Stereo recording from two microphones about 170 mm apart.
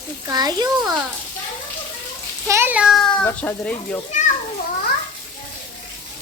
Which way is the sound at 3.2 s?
10° left (ahead or behind).